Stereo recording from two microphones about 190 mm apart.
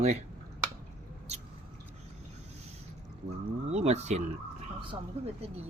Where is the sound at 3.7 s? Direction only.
35° right (ahead or behind).